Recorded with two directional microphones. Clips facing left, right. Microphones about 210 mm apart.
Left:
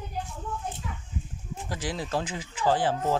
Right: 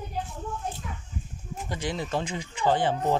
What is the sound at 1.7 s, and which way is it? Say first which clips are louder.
Speech: right 1 dB; 5° left (ahead or behind).